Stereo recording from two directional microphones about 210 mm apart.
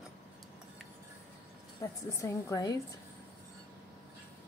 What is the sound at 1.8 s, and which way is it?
Speech, 15° left (ahead or behind).